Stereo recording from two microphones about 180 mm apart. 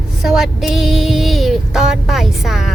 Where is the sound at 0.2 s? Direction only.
Centre (ahead or behind).